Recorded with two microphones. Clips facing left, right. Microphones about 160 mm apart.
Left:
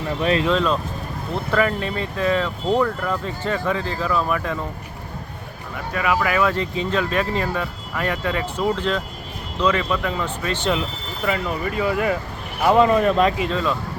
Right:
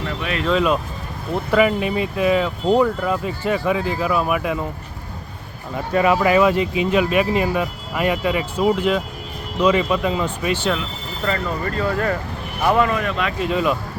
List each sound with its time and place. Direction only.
0.2 s speech: 35° left (ahead or behind)
0.5 s speech: 10° right (ahead or behind)
5.7 s speech: 30° right (ahead or behind)
6.5 s speech: 10° right (ahead or behind)
11.3 s speech: 10° left (ahead or behind)
12.7 s speech: 30° left (ahead or behind)
13.5 s speech: 15° right (ahead or behind)